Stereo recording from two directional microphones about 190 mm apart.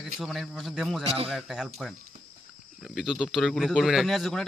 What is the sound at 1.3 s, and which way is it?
Speech, centre (ahead or behind).